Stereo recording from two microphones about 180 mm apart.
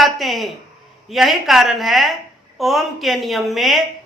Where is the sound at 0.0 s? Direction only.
Centre (ahead or behind).